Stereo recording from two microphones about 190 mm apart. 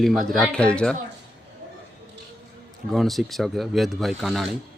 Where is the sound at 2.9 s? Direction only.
Centre (ahead or behind).